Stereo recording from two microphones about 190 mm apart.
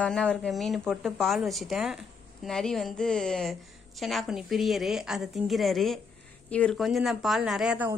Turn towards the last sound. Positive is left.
turn(degrees=-5)  # may be behind; listen again after turning